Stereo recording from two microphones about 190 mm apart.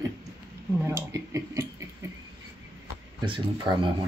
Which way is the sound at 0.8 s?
15° right (ahead or behind).